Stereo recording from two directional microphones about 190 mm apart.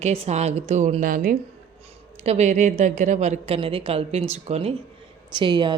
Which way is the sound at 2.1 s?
35° right (ahead or behind).